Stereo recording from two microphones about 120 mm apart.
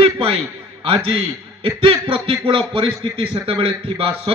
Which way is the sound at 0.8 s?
50° right (ahead or behind).